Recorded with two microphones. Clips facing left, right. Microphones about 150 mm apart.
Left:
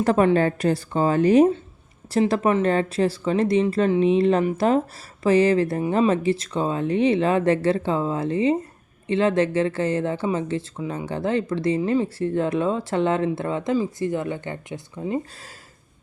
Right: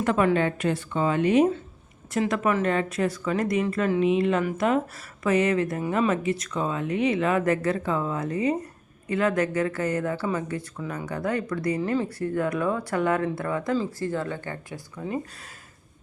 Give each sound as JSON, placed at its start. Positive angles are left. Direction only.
{"t": 0.0, "sound": "speech", "side_deg": 35}